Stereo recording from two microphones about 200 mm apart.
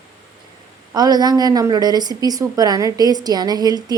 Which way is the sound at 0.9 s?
20° right (ahead or behind).